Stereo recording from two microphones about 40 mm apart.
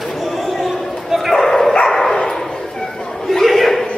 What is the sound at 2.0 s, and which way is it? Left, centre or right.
Bow-wow, centre.